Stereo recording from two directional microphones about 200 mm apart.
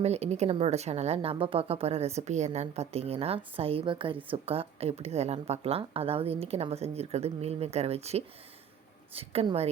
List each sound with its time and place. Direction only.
0.0 s a woman's voice: 30° right (ahead or behind)